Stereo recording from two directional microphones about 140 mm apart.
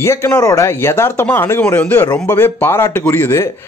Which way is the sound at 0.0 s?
20° left (ahead or behind).